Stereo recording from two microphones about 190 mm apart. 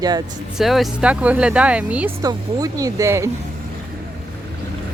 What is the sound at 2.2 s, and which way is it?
Speech, 20° right (ahead or behind).